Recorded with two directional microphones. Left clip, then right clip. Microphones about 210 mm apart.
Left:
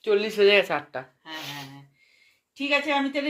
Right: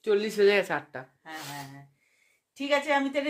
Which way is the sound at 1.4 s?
20° right (ahead or behind).